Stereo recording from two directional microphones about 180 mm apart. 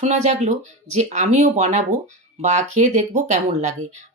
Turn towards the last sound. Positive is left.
turn(degrees=-40)  # may be behind; listen again after turning